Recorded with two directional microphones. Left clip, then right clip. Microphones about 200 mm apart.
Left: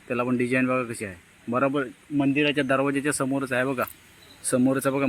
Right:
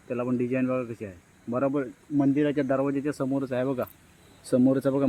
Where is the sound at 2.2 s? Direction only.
10° right (ahead or behind).